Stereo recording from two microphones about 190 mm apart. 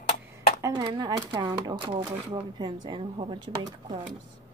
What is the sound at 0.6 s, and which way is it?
Speech, 20° right (ahead or behind).